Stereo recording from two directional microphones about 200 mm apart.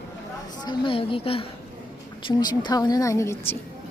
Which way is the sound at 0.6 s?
25° left (ahead or behind).